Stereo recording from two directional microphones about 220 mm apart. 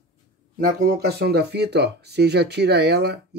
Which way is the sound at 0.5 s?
45° right (ahead or behind).